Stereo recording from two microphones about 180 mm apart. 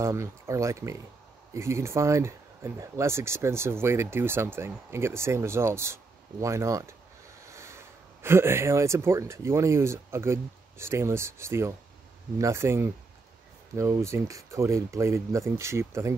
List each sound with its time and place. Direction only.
0.0 s speech: 15° right (ahead or behind)